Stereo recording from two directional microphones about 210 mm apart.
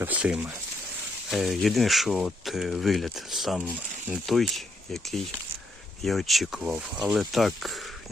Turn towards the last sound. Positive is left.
turn(degrees=0)  # may be behind; listen again after turning